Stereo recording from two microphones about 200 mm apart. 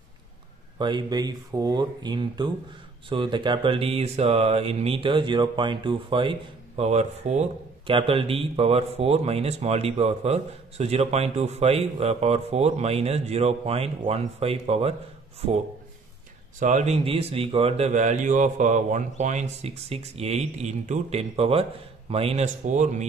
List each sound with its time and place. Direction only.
0.7 s speech: 20° right (ahead or behind)
16.5 s speech: 40° right (ahead or behind)